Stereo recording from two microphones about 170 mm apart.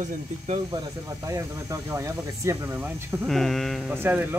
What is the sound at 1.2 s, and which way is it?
Speech, 20° right (ahead or behind).